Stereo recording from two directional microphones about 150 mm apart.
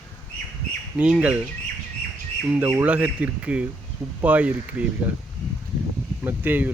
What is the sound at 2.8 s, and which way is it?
Speech, 10° right (ahead or behind).